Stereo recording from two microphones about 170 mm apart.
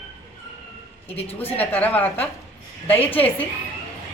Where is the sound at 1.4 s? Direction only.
10° left (ahead or behind).